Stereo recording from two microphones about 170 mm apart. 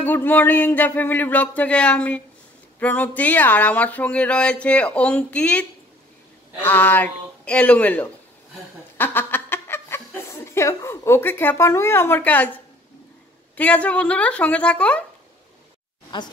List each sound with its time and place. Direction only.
0.0 s speech: 10° left (ahead or behind)
13.6 s speech: 10° left (ahead or behind)
16.1 s speech: 30° left (ahead or behind)